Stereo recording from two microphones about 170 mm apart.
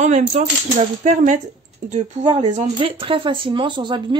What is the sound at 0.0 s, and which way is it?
Speech, 45° right (ahead or behind).